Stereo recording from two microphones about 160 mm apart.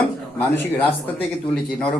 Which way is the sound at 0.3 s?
10° left (ahead or behind).